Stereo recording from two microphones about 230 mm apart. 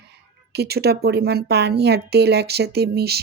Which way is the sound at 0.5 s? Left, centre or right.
Right.